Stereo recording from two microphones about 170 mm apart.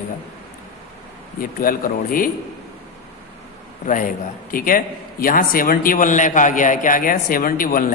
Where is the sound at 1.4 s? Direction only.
55° left (ahead or behind).